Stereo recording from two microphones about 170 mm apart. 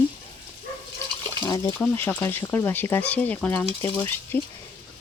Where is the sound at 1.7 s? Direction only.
10° left (ahead or behind).